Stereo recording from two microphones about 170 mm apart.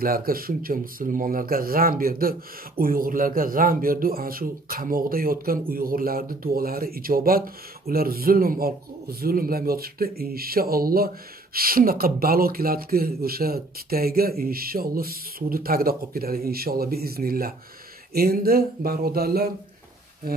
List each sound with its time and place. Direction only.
0.0 s a man's voice: 60° right (ahead or behind)